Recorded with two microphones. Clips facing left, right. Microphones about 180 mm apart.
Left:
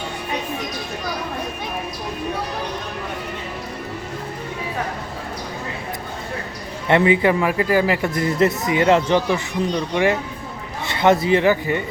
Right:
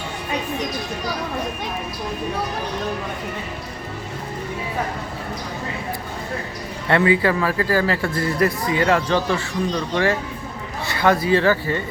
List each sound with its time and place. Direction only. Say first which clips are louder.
6.8 s a man's voice: left 2 dB; 20° left (ahead or behind)